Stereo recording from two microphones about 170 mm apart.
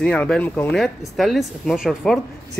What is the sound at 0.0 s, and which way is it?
Speech, 5° left (ahead or behind).